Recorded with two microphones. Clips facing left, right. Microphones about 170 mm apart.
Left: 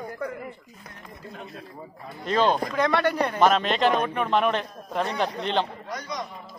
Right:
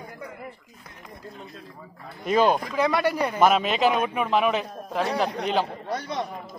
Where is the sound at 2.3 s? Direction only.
10° right (ahead or behind).